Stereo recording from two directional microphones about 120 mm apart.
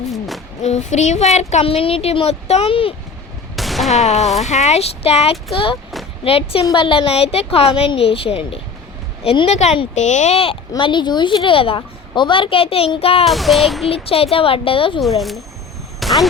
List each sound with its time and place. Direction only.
0.1 s music: centre (ahead or behind)
0.6 s speech: 75° left (ahead or behind); by 2.9 s 50° left (ahead or behind)
3.5 s fusillade: centre (ahead or behind)
4.0 s a woman's voice: 70° left (ahead or behind); by 9.5 s 45° left (ahead or behind)
9.5 s speech: 70° left (ahead or behind)
9.9 s speech: 90° left
10.3 s a woman's voice: 50° left (ahead or behind)
13.2 s child singing: centre (ahead or behind)
13.8 s a woman's voice: 55° left (ahead or behind)
16.0 s a sound: centre (ahead or behind)